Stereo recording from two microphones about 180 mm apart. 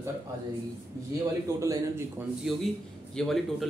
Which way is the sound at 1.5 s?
15° right (ahead or behind).